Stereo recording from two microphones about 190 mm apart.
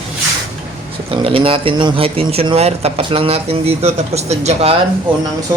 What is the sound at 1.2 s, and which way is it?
Speech, 30° right (ahead or behind).